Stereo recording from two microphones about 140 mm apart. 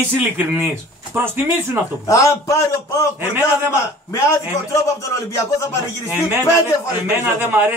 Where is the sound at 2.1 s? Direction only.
20° left (ahead or behind).